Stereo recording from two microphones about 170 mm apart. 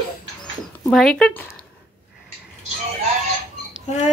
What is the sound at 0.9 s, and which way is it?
Speech, centre (ahead or behind).